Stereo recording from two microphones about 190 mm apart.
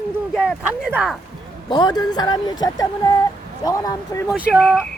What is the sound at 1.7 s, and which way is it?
A woman's voice, 20° left (ahead or behind).